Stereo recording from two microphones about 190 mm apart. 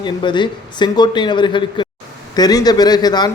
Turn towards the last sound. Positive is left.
turn(degrees=20)  # may be behind; listen again after turning